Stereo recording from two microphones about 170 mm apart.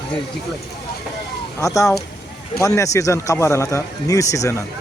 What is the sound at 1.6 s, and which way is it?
Speech, 20° left (ahead or behind).